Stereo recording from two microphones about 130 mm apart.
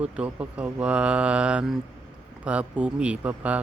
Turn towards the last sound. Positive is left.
turn(degrees=-10)  # may be behind; listen again after turning